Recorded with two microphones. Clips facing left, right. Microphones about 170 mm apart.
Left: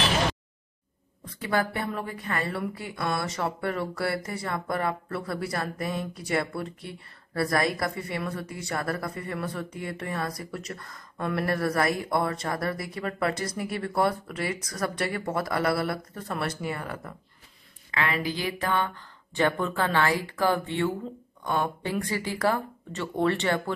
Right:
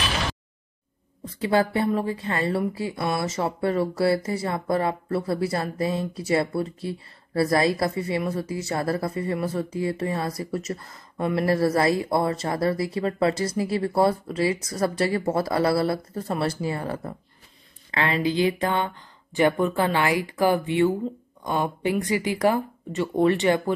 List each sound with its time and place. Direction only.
1.4 s a woman's voice: 25° right (ahead or behind)